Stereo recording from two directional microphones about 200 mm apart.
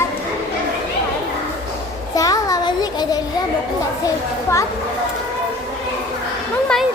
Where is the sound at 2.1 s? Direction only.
15° left (ahead or behind).